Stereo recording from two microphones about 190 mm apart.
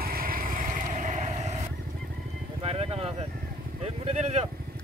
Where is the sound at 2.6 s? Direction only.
30° right (ahead or behind).